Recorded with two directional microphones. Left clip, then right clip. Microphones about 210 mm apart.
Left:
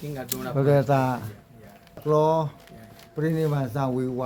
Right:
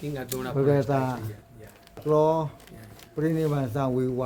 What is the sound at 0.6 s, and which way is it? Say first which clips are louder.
Speech: left 3 dB; 30° left (ahead or behind).